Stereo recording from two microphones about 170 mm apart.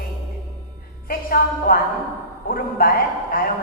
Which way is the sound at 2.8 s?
55° left (ahead or behind).